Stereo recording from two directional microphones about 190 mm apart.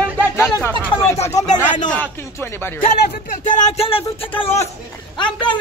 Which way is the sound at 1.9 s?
10° left (ahead or behind).